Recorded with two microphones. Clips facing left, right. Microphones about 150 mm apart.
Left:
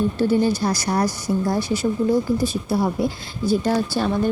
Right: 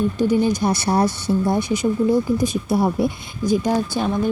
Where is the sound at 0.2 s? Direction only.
15° right (ahead or behind).